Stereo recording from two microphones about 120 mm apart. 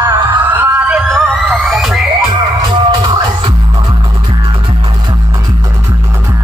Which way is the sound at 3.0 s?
40° right (ahead or behind).